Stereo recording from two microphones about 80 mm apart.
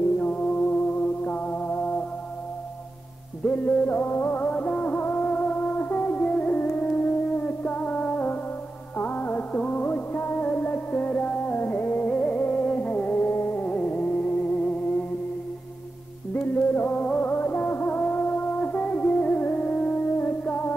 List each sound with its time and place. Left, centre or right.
0.2 s music: centre
3.4 s music: centre
16.3 s music: left